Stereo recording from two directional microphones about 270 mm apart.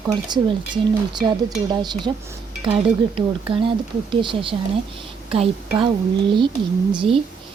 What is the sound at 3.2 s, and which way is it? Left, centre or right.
A woman's voice, centre.